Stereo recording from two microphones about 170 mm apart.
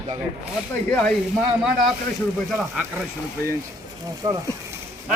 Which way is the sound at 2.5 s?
5° right (ahead or behind).